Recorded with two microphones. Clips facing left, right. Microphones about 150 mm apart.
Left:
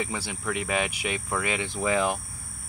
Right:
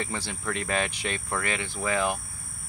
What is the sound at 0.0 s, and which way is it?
Speech, 10° left (ahead or behind).